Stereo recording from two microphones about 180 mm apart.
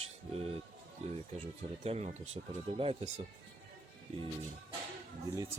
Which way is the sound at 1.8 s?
35° right (ahead or behind).